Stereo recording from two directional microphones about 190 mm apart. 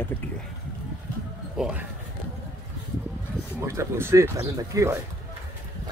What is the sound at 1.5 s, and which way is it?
Speech, 5° right (ahead or behind).